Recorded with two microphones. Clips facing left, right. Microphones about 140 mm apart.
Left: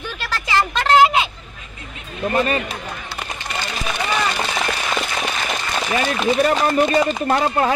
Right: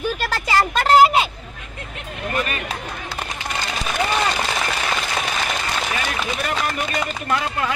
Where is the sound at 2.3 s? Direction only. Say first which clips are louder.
Left 6 dB; 30° left (ahead or behind).